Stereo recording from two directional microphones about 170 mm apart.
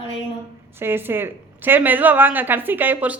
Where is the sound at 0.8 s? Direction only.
15° right (ahead or behind).